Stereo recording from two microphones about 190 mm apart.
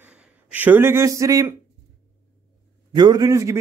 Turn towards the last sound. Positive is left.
turn(degrees=-15)  # may be behind; listen again after turning